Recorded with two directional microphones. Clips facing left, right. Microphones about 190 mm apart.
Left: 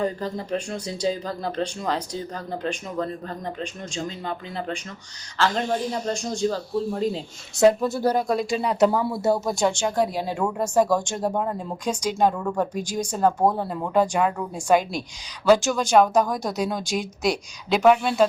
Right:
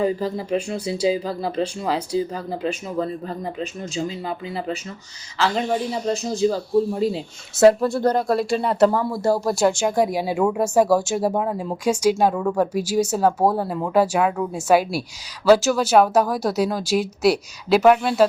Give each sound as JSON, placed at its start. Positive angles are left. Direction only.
{"t": 0.0, "sound": "speech", "side_deg": -5}